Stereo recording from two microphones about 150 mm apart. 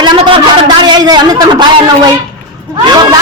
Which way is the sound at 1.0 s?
25° right (ahead or behind).